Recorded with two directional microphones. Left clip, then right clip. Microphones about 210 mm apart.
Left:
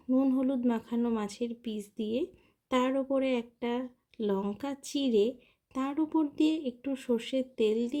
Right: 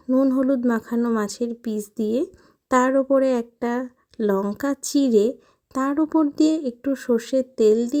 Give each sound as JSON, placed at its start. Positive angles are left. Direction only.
{"t": 0.1, "sound": "speech", "side_deg": -25}